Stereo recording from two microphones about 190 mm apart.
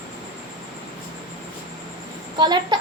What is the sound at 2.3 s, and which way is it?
Speech, 25° right (ahead or behind).